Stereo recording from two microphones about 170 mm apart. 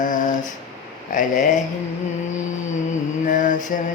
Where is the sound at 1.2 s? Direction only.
45° left (ahead or behind).